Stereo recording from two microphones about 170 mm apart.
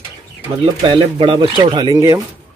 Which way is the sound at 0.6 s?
30° right (ahead or behind).